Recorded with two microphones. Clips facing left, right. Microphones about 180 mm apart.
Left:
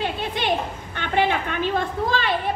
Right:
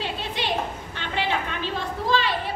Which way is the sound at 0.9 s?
55° left (ahead or behind).